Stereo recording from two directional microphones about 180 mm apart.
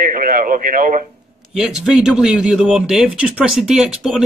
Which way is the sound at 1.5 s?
5° right (ahead or behind).